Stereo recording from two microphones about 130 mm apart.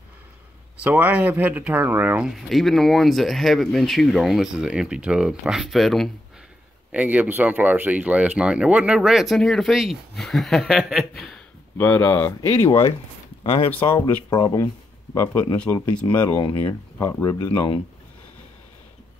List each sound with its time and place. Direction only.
0.7 s speech: 10° right (ahead or behind)
2.3 s speech: centre (ahead or behind)
6.9 s speech: 10° right (ahead or behind)
11.8 s speech: 15° left (ahead or behind)
12.4 s speech: 25° left (ahead or behind)
13.4 s speech: 45° left (ahead or behind)
14.0 s speech: 30° left (ahead or behind)
15.6 s speech: 10° left (ahead or behind)
17.2 s speech: 30° left (ahead or behind)